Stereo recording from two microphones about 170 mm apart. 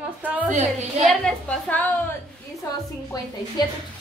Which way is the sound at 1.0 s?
5° left (ahead or behind).